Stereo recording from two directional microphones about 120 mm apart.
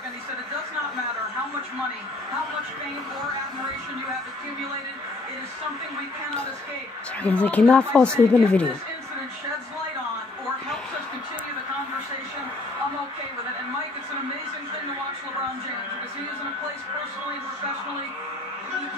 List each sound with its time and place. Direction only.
7.2 s speech: 10° left (ahead or behind)